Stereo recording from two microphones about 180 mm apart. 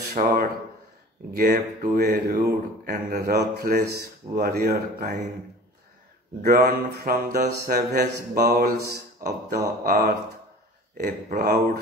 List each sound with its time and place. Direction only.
0.1 s speech: 50° right (ahead or behind)
6.4 s speech: 55° right (ahead or behind)